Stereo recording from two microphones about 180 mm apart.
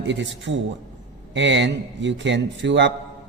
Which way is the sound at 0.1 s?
80° right.